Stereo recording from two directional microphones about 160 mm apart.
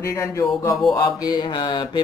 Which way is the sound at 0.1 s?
20° left (ahead or behind).